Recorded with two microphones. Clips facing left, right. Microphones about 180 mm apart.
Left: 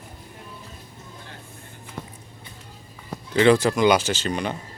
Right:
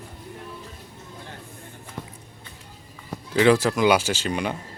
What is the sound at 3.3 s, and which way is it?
Speech, 5° right (ahead or behind).